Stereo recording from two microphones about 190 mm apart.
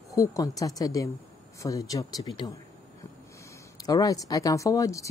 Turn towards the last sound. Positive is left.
turn(degrees=15)  # may be behind; listen again after turning